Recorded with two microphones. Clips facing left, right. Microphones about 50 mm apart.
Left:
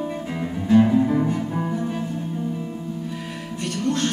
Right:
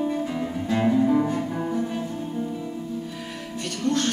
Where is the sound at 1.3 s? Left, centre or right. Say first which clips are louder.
Left 1 dB; centre.